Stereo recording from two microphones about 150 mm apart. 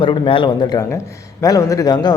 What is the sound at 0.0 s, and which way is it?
Speech, 35° left (ahead or behind).